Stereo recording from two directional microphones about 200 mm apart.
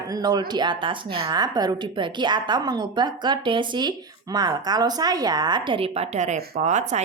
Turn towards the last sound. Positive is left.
turn(degrees=-35)  # may be behind; listen again after turning